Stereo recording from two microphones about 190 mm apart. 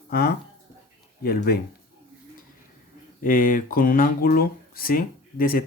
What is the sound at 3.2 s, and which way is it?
Speech, 45° left (ahead or behind).